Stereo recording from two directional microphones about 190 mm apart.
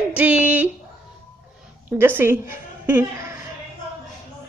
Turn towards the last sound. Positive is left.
turn(degrees=-15)  # may be behind; listen again after turning